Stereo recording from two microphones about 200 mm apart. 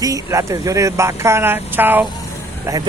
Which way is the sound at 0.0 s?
15° right (ahead or behind).